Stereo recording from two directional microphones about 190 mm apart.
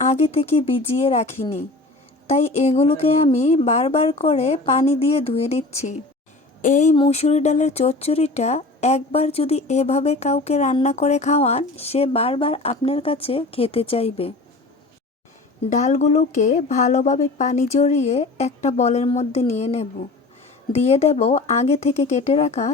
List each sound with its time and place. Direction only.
0.0 s a woman's voice: 35° left (ahead or behind)
6.9 s a woman's voice: 30° left (ahead or behind)
15.7 s a woman's voice: 40° left (ahead or behind)